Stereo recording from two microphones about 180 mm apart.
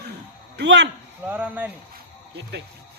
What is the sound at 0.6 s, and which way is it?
Speech, 80° right.